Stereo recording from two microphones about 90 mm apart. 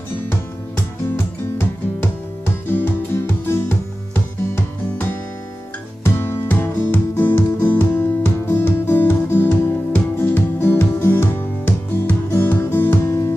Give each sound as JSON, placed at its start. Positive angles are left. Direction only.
{"t": 2.0, "sound": "music", "side_deg": 25}
{"t": 6.0, "sound": "music", "side_deg": 25}